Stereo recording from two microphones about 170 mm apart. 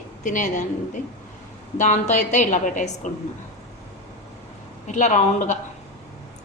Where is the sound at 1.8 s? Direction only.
45° left (ahead or behind).